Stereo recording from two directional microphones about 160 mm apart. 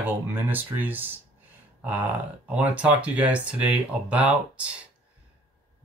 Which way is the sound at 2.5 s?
10° right (ahead or behind).